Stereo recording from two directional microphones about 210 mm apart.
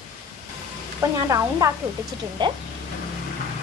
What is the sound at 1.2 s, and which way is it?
A woman's voice, 15° right (ahead or behind).